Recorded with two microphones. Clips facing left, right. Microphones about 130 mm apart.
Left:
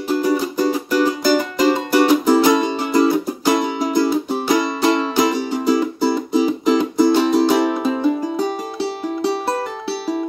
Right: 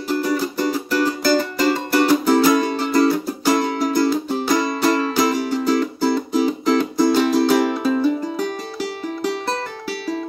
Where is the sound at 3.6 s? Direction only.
15° left (ahead or behind).